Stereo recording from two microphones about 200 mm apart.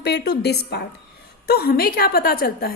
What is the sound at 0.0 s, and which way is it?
A woman's voice, 55° left (ahead or behind).